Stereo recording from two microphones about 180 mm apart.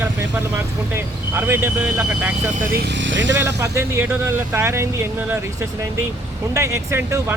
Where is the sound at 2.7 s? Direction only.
75° right (ahead or behind); by 3.3 s 90° right.